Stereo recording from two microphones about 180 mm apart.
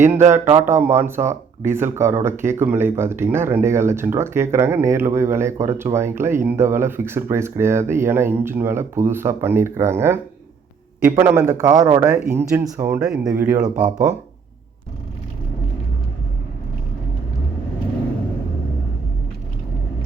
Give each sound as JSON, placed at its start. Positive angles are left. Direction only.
{"t": 0.3, "sound": "speech", "side_deg": -15}
{"t": 13.0, "sound": "speech", "side_deg": -5}